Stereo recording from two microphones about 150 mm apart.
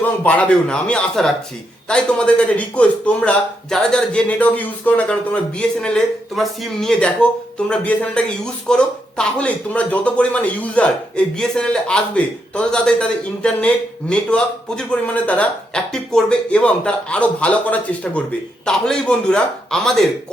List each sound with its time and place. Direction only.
0.0 s a man's voice: 10° left (ahead or behind)